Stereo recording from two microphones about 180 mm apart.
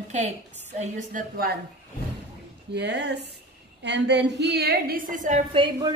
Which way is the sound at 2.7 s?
70° right (ahead or behind).